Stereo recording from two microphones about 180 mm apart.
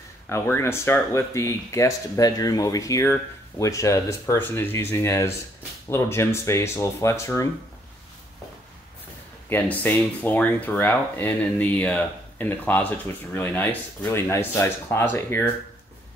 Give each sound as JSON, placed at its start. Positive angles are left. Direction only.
{"t": 0.3, "sound": "speech", "side_deg": 15}
{"t": 9.5, "sound": "speech", "side_deg": 10}